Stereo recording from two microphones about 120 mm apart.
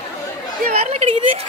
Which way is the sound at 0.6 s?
65° right (ahead or behind).